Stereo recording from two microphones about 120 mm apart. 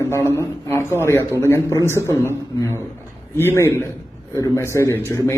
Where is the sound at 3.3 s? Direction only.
20° left (ahead or behind).